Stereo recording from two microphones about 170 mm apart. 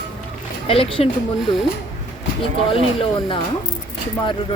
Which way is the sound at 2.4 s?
30° left (ahead or behind).